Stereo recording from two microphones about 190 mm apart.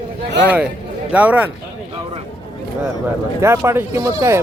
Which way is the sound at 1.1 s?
5° right (ahead or behind).